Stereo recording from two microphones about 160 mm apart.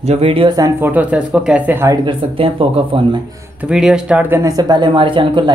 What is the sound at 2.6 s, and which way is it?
Speech, 35° right (ahead or behind).